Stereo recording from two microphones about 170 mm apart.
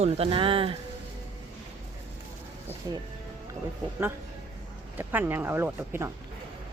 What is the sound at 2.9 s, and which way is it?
Speech, 25° right (ahead or behind).